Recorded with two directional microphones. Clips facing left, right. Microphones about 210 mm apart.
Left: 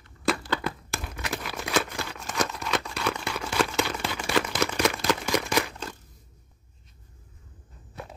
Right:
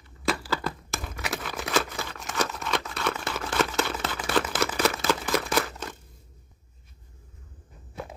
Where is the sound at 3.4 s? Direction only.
Centre (ahead or behind).